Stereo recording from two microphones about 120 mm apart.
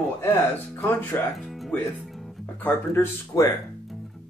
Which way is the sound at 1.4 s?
Centre (ahead or behind).